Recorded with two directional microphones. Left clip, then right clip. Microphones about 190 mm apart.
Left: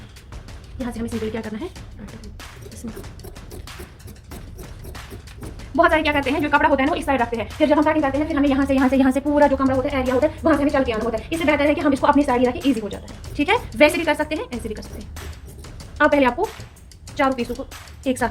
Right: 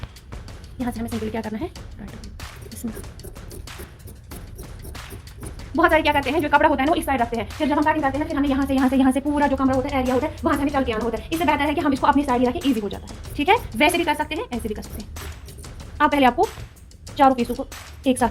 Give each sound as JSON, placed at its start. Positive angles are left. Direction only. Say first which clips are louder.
{"t": 0.9, "sound": "speech", "louder": "left 2 dB", "side_deg": -45}
{"t": 5.7, "sound": "a woman's voice", "louder": "left 1 dB", "side_deg": -45}
{"t": 9.4, "sound": "a woman's voice", "louder": "left 4 dB", "side_deg": -40}
{"t": 16.0, "sound": "speech", "louder": "left 1 dB", "side_deg": -45}
{"t": 17.2, "sound": "speech", "louder": "right 4 dB", "side_deg": -25}